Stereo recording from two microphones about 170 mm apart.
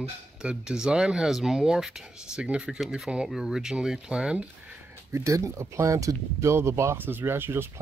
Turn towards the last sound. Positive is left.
turn(degrees=-15)  # may be behind; listen again after turning